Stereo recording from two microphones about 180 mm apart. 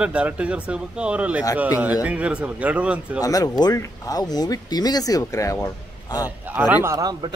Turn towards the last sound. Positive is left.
turn(degrees=-20)  # may be behind; listen again after turning